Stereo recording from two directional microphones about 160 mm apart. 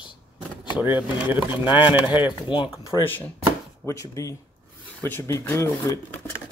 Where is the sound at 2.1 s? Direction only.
30° left (ahead or behind).